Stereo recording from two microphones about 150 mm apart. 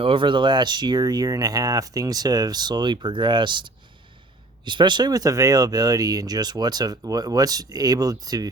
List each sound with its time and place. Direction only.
0.0 s speech: 35° right (ahead or behind)